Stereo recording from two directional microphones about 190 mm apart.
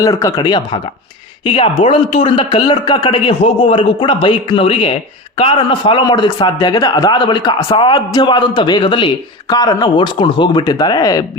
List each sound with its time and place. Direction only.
0.0 s a man's voice: 20° left (ahead or behind)